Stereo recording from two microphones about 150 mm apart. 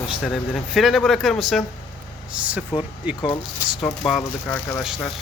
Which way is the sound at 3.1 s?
10° right (ahead or behind).